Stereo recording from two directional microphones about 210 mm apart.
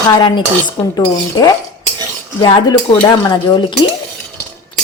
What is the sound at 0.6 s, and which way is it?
Cutlery, 15° left (ahead or behind).